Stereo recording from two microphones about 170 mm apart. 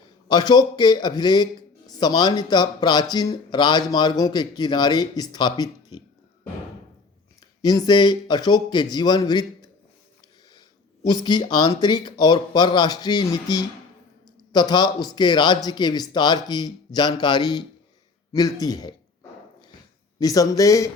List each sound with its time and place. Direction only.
0.3 s speech: 25° left (ahead or behind)
7.6 s speech: 25° left (ahead or behind)
11.0 s speech: 25° left (ahead or behind)
20.1 s speech: 20° left (ahead or behind)